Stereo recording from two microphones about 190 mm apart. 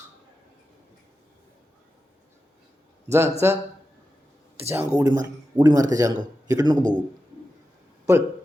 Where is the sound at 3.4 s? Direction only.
10° right (ahead or behind).